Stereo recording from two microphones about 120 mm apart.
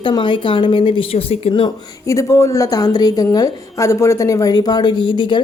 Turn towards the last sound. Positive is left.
turn(degrees=40)  # may be behind; listen again after turning